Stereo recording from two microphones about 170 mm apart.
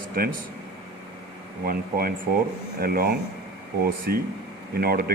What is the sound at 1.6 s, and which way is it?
Speech, 60° right (ahead or behind).